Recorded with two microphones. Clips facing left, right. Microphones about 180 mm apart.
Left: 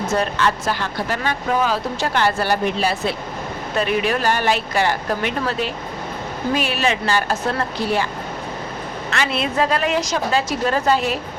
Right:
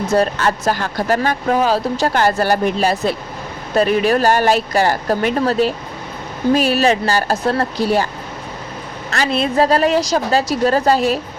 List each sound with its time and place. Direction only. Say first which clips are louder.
0.1 s speech: right 5 dB; 40° right (ahead or behind)
9.0 s speech: right 4 dB; 40° right (ahead or behind)